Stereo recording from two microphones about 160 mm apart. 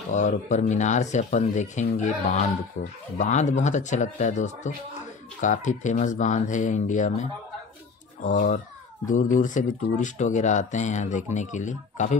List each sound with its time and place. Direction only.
0.1 s speech: 50° left (ahead or behind)